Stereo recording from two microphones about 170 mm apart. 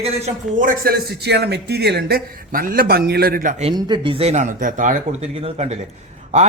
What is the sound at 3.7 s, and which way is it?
Speech, 25° right (ahead or behind).